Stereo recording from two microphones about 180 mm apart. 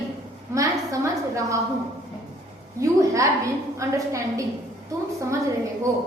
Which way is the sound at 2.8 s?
20° right (ahead or behind).